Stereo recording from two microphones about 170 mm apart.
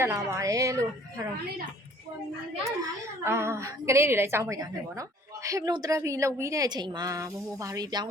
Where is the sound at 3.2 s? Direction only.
15° right (ahead or behind).